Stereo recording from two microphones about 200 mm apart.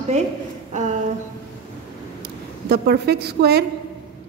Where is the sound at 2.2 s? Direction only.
55° right (ahead or behind).